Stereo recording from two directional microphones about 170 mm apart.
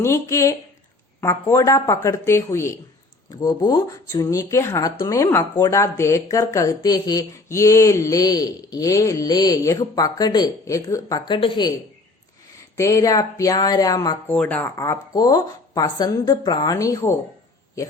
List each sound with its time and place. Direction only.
0.0 s a woman's voice: 15° left (ahead or behind)
12.7 s speech: 15° left (ahead or behind)
14.3 s speech: 10° left (ahead or behind)